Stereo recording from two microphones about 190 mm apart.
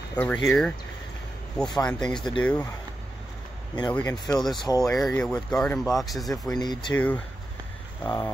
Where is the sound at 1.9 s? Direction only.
5° left (ahead or behind).